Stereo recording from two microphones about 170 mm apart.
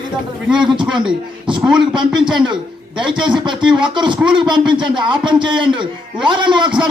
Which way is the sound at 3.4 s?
30° right (ahead or behind).